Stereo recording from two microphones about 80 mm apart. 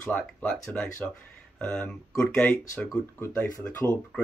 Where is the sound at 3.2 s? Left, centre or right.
Left.